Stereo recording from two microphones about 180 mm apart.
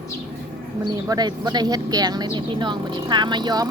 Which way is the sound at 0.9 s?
20° right (ahead or behind).